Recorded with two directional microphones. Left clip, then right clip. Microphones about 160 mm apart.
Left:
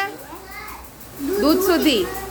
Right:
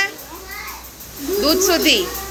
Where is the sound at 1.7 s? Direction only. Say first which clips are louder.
Right 2 dB; 30° left (ahead or behind).